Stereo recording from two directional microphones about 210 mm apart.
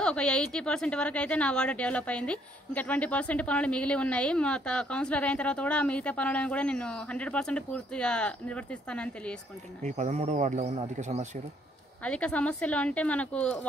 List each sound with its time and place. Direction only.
0.0 s a woman's voice: 5° left (ahead or behind)
9.8 s speech: 35° right (ahead or behind)
12.0 s a woman's voice: 5° left (ahead or behind)